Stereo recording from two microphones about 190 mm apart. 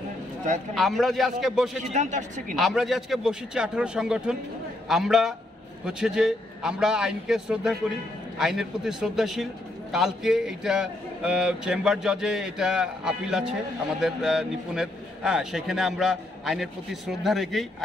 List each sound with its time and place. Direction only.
0.7 s a man's voice: centre (ahead or behind)
2.0 s speech: 40° right (ahead or behind)
2.5 s a man's voice: centre (ahead or behind)